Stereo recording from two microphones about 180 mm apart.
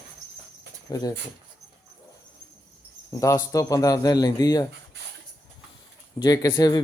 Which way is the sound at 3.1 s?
20° left (ahead or behind).